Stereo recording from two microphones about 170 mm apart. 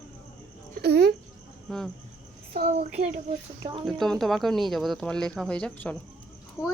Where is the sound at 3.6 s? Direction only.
30° right (ahead or behind).